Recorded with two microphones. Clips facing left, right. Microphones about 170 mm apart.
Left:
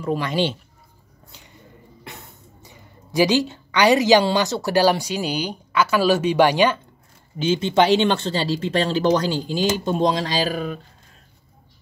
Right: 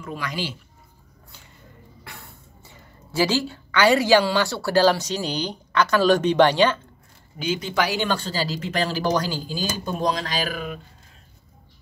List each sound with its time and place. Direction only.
0.0 s speech: 30° left (ahead or behind)
1.3 s a sound: 15° left (ahead or behind)
2.0 s speech: 20° left (ahead or behind)
7.3 s speech: 25° left (ahead or behind)